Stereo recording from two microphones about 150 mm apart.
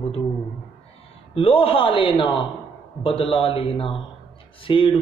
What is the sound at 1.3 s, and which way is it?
A man's voice, 40° left (ahead or behind).